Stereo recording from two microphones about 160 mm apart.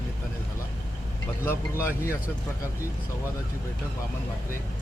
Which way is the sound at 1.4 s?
15° left (ahead or behind).